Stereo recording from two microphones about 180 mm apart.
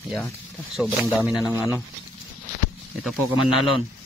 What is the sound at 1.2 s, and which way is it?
Speech, 5° right (ahead or behind).